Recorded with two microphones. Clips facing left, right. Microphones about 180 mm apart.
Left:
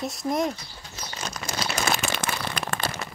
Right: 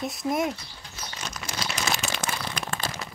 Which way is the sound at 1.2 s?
45° left (ahead or behind).